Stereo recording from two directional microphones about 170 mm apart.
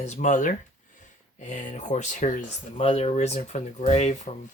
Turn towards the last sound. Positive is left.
turn(degrees=40)  # may be behind; listen again after turning